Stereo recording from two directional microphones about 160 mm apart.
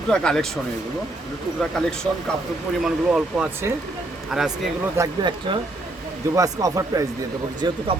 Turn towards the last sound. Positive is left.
turn(degrees=-25)  # may be behind; listen again after turning